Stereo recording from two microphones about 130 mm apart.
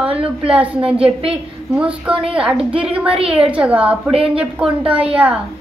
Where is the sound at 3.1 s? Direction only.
45° right (ahead or behind).